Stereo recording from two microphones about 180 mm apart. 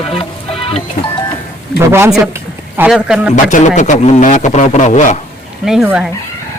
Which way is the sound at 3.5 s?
45° left (ahead or behind).